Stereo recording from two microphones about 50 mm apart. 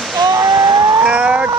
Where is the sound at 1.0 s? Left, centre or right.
Right.